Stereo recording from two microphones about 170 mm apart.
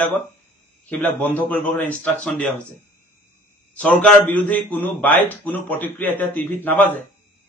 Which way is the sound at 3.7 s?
5° left (ahead or behind).